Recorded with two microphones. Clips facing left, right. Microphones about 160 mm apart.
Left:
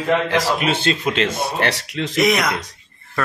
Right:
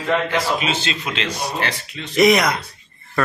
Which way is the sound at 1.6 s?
75° left (ahead or behind).